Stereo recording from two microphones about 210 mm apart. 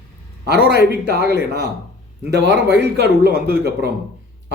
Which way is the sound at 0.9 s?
50° right (ahead or behind).